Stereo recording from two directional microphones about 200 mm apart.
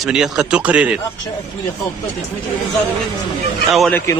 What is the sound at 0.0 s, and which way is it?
Speech, 5° right (ahead or behind).